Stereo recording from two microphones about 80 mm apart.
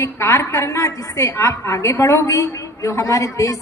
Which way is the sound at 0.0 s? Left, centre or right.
Left.